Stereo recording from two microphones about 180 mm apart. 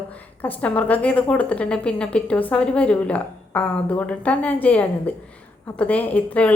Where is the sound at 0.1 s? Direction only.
10° left (ahead or behind).